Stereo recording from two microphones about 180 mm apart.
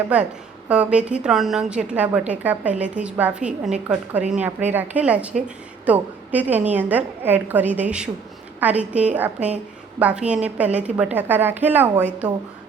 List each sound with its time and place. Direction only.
0.1 s a woman's voice: 5° right (ahead or behind)